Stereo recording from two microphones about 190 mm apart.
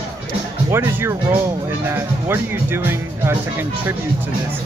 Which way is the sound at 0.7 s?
15° right (ahead or behind).